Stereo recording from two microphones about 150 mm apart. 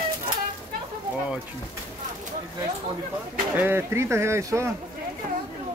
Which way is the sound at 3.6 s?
15° right (ahead or behind).